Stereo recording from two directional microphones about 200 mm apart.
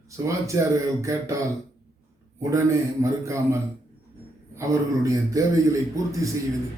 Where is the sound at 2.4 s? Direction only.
15° right (ahead or behind).